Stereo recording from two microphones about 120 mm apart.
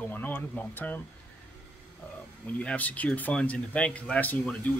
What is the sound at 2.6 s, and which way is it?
Speech, 10° left (ahead or behind).